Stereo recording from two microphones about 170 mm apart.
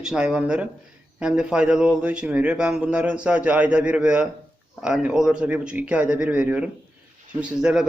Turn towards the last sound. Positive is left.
turn(degrees=-5)  # may be behind; listen again after turning